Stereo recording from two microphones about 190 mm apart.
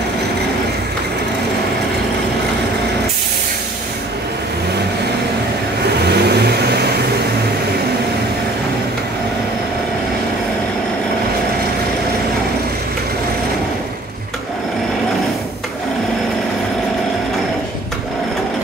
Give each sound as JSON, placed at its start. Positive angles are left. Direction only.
{"t": 6.0, "sound": "vehicle", "side_deg": -60}